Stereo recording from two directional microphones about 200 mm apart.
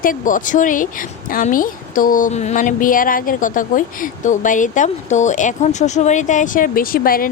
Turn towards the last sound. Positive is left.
turn(degrees=45)  # may be behind; listen again after turning